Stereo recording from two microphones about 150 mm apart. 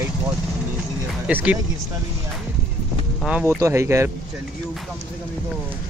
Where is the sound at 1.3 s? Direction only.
10° right (ahead or behind).